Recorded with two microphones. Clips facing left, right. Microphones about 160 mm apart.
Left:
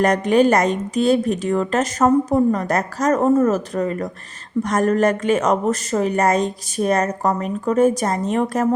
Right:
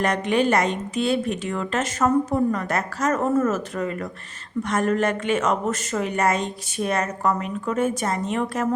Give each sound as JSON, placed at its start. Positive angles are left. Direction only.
{"t": 0.0, "sound": "a woman's voice", "side_deg": 40}